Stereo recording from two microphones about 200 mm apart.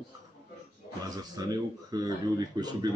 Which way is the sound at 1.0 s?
20° right (ahead or behind).